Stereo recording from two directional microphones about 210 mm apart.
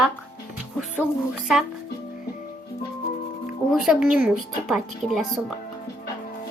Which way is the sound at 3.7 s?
Centre (ahead or behind).